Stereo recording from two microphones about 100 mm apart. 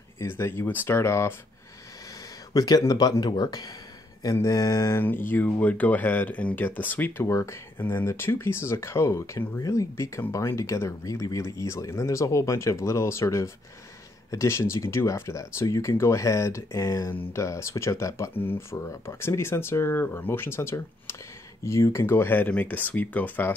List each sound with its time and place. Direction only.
0.2 s speech: 25° left (ahead or behind)
2.5 s speech: 40° left (ahead or behind); by 7.2 s 20° left (ahead or behind)
7.2 s speech: 30° left (ahead or behind)